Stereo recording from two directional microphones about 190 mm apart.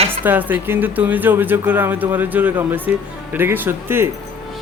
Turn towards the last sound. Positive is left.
turn(degrees=-10)  # may be behind; listen again after turning